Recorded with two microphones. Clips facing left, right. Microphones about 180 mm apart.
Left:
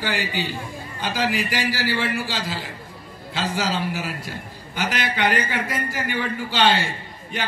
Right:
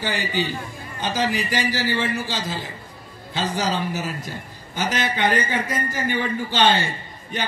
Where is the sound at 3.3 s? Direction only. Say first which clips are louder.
Right 1 dB; 20° right (ahead or behind).